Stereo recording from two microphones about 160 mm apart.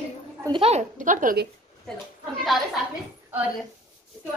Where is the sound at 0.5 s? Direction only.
40° right (ahead or behind).